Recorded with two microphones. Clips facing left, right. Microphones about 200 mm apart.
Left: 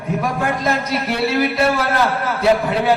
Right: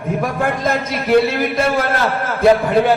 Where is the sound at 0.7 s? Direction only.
50° right (ahead or behind).